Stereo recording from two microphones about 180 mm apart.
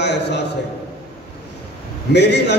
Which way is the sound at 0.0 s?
70° left (ahead or behind).